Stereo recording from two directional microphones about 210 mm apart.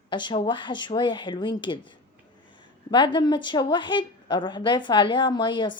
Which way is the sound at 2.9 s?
20° left (ahead or behind).